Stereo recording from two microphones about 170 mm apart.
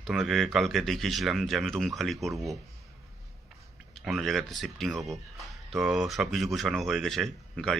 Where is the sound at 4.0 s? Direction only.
Centre (ahead or behind).